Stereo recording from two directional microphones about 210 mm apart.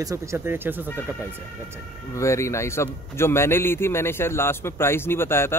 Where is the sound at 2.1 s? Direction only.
15° left (ahead or behind).